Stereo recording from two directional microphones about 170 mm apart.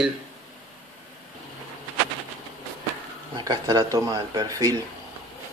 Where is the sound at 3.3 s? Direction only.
20° right (ahead or behind).